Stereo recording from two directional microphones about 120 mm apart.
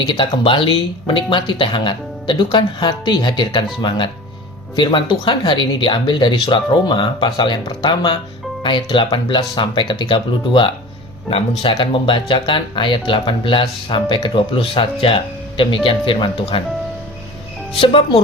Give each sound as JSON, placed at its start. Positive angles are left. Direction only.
{"t": 0.1, "sound": "speech", "side_deg": 45}
{"t": 17.7, "sound": "speech", "side_deg": 50}